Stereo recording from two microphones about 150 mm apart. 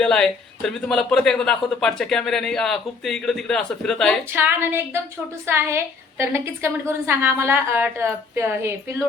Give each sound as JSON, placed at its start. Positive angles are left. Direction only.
{"t": 0.0, "sound": "speech", "side_deg": 5}
{"t": 4.3, "sound": "a woman's voice", "side_deg": -15}